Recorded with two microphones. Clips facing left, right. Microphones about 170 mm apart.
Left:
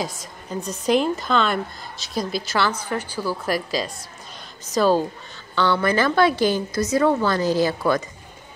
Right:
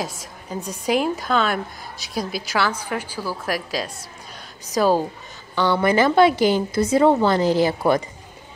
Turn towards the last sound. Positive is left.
turn(degrees=-20)  # may be behind; listen again after turning